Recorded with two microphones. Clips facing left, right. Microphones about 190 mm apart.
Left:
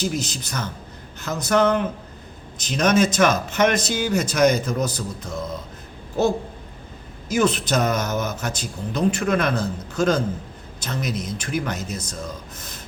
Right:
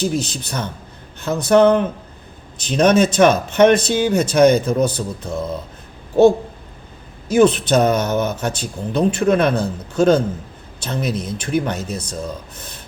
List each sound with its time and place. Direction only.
0.0 s speech: 30° right (ahead or behind)
7.3 s speech: 30° right (ahead or behind)